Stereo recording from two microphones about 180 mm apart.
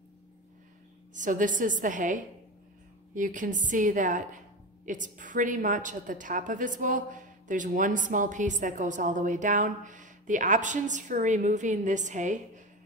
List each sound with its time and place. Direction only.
1.1 s a woman's voice: 45° right (ahead or behind)
3.2 s a woman's voice: 45° right (ahead or behind)